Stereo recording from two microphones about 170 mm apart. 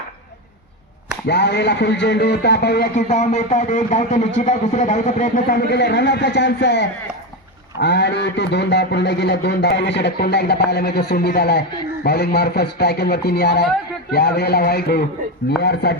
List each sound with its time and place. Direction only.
1.3 s speech: 80° left
2.9 s speech: 40° left (ahead or behind)
5.7 s speech: 80° left